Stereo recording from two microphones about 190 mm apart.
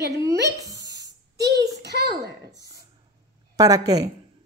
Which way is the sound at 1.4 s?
60° right (ahead or behind).